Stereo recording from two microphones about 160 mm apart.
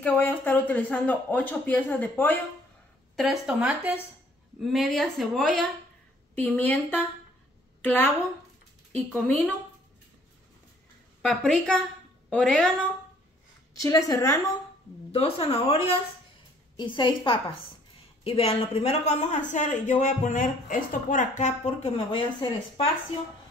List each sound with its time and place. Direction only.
0.0 s speech: 10° left (ahead or behind)
3.2 s a woman's voice: centre (ahead or behind)
8.9 s a woman's voice: 5° left (ahead or behind)
11.2 s a woman's voice: 5° left (ahead or behind)
13.7 s a woman's voice: 20° left (ahead or behind)
15.1 s speech: 40° left (ahead or behind)